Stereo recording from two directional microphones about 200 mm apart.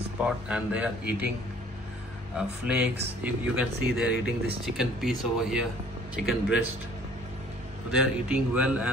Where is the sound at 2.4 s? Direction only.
5° right (ahead or behind).